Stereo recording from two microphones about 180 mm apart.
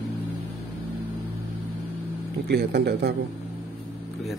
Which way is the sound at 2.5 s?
60° right (ahead or behind).